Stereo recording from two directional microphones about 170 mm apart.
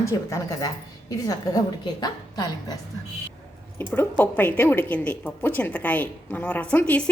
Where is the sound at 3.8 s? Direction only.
10° left (ahead or behind).